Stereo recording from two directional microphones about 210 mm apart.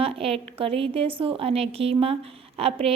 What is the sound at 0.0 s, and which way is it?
A woman's voice, 25° right (ahead or behind).